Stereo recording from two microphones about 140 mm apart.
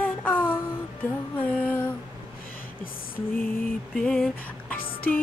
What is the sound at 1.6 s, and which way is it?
Music, 15° left (ahead or behind).